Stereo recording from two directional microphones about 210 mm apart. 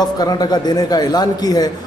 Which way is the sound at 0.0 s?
20° left (ahead or behind).